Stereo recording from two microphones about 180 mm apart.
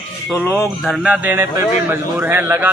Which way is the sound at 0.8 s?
5° right (ahead or behind).